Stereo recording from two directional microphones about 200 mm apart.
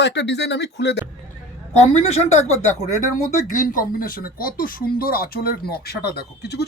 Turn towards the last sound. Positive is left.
turn(degrees=55)  # may be behind; listen again after turning